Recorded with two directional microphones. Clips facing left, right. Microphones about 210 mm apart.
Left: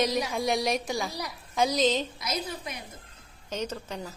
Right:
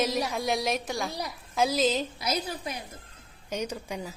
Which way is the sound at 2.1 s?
30° right (ahead or behind).